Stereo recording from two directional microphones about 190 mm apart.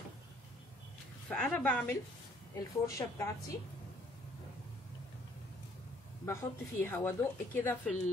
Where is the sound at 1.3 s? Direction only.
5° left (ahead or behind).